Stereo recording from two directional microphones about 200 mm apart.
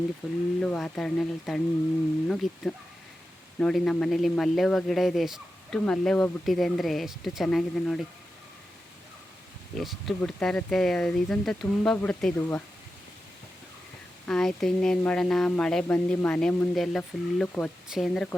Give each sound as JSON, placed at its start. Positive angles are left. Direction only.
{"t": 0.2, "sound": "speech", "side_deg": -5}
{"t": 9.7, "sound": "speech", "side_deg": 0}
{"t": 14.3, "sound": "speech", "side_deg": 0}